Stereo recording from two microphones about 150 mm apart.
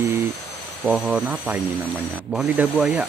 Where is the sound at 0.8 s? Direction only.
5° right (ahead or behind).